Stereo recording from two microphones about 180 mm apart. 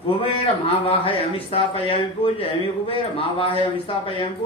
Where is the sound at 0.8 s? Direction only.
30° left (ahead or behind).